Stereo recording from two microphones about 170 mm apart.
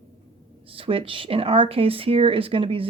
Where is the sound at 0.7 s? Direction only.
30° right (ahead or behind).